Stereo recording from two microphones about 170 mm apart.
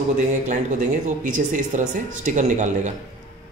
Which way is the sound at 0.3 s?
45° right (ahead or behind).